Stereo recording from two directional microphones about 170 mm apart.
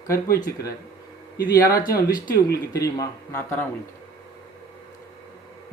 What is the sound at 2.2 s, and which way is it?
Speech, 65° left (ahead or behind).